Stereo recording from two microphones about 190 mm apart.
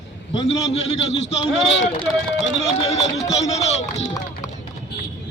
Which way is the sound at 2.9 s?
35° left (ahead or behind).